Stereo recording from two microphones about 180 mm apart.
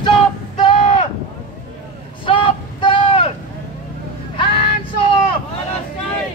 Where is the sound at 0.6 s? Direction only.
30° left (ahead or behind).